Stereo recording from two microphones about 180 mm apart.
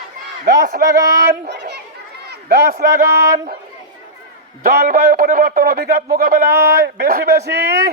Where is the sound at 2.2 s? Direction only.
60° right (ahead or behind).